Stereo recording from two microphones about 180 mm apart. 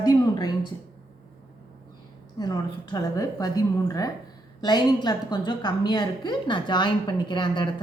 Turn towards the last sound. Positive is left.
turn(degrees=25)  # may be behind; listen again after turning